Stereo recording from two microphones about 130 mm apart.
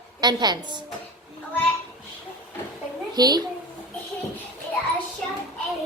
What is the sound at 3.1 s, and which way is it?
Speech, 30° right (ahead or behind).